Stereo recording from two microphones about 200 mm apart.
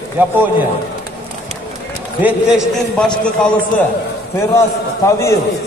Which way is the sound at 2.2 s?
5° right (ahead or behind).